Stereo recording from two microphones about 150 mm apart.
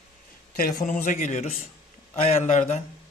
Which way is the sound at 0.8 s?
60° left (ahead or behind).